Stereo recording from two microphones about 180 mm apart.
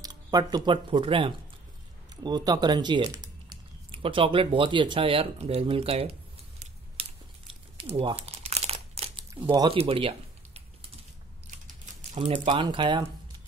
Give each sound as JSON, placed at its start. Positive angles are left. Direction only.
{"t": 0.0, "sound": "speech", "side_deg": -20}
{"t": 6.6, "sound": "a sound", "side_deg": -30}
{"t": 9.4, "sound": "typing", "side_deg": -25}
{"t": 12.4, "sound": "speech", "side_deg": -25}